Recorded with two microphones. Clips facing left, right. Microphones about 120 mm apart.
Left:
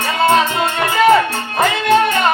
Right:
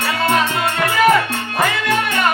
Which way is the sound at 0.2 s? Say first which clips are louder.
Left 5 dB; 25° left (ahead or behind).